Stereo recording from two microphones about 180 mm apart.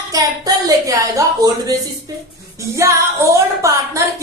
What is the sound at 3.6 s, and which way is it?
Speech, 15° right (ahead or behind).